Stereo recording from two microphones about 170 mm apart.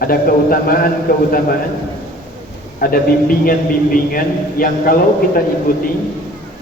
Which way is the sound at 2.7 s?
60° left (ahead or behind).